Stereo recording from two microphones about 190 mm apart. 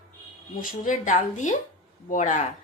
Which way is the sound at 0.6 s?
45° left (ahead or behind).